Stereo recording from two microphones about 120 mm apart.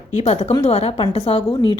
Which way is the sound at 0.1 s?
65° left (ahead or behind).